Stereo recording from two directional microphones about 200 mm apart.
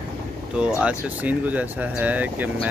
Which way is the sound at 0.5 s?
5° right (ahead or behind).